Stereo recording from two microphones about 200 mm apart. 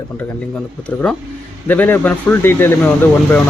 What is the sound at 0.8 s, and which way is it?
Speech, 5° left (ahead or behind).